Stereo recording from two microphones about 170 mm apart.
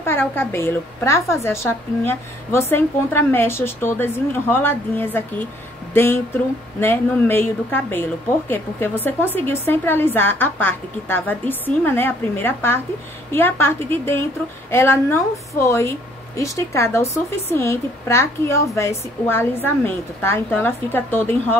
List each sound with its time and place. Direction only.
0.0 s a woman's voice: 15° left (ahead or behind)